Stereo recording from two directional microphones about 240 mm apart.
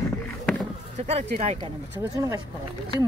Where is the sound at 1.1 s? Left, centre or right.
Right.